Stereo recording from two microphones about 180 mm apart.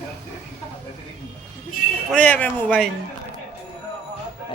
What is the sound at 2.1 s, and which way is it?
Speech, 10° left (ahead or behind).